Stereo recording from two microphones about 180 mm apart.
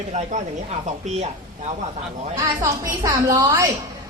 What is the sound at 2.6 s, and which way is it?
A woman's voice, 20° right (ahead or behind).